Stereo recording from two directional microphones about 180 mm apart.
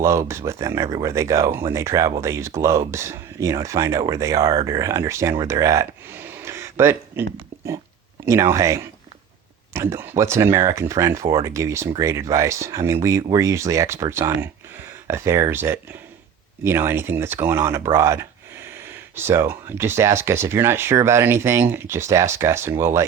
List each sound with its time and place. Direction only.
0.0 s speech: 15° right (ahead or behind)